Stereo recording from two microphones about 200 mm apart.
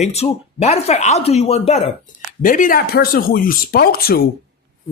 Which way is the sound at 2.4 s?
40° left (ahead or behind).